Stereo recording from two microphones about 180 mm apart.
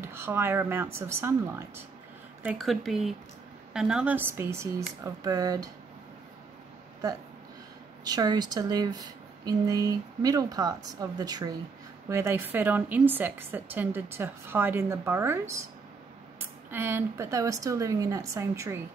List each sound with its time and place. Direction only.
0.0 s a woman's voice: 15° right (ahead or behind)
2.4 s a woman's voice: centre (ahead or behind); by 5.7 s 20° right (ahead or behind)
8.0 s a woman's voice: 20° right (ahead or behind)
16.7 s a woman's voice: 10° right (ahead or behind)